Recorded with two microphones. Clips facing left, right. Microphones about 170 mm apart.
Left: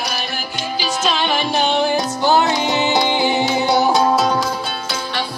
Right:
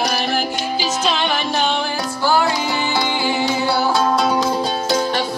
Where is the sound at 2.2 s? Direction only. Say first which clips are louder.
Left 1 dB; 20° left (ahead or behind).